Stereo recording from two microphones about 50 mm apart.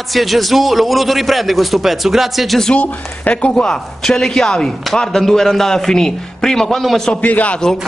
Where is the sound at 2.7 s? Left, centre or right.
Left.